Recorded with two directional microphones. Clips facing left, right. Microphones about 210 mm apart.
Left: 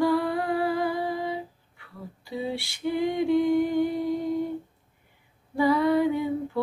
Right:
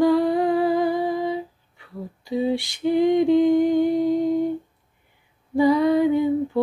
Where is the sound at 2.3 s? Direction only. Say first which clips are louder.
Right 8 dB; 15° right (ahead or behind).